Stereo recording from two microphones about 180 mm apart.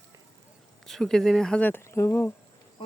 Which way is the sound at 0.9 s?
Centre (ahead or behind).